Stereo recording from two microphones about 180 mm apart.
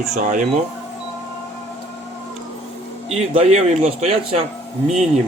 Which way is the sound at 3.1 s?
35° right (ahead or behind).